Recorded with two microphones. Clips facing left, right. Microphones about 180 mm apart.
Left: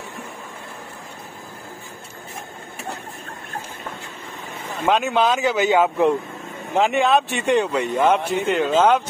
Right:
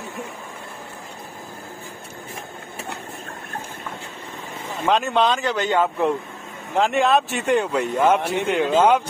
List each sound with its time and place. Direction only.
4.8 s speech: centre (ahead or behind)